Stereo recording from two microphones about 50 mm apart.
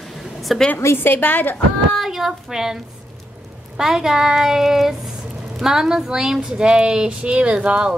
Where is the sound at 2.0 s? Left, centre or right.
Centre.